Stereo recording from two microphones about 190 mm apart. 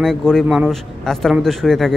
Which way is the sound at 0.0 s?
5° left (ahead or behind).